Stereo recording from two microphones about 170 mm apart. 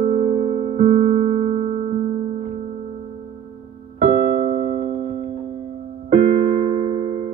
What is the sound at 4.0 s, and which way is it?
Electric piano, 40° right (ahead or behind).